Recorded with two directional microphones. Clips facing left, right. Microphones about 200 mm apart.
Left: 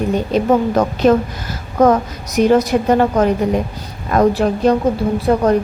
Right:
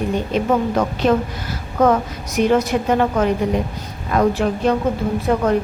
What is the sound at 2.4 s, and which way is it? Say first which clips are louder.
A woman's voice: left 4 dB; 40° left (ahead or behind).